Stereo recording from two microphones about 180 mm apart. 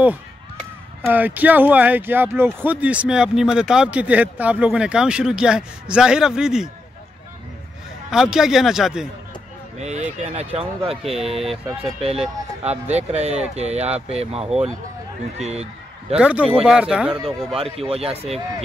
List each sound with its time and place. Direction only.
1.0 s speech: 10° right (ahead or behind)
8.1 s speech: 5° right (ahead or behind)
9.8 s speech: 40° right (ahead or behind)
10.5 s speech: 10° right (ahead or behind)
11.8 s speech: 35° right (ahead or behind)
14.4 s speech: 5° right (ahead or behind)
15.3 s a man's voice: 35° right (ahead or behind)
16.2 s speech: 5° right (ahead or behind)
17.6 s speech: 30° right (ahead or behind)